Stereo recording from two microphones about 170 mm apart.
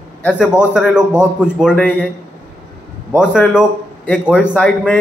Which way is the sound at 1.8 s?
10° left (ahead or behind).